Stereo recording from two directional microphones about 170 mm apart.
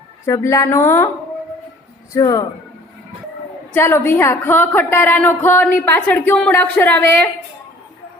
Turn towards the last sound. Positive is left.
turn(degrees=10)  # may be behind; listen again after turning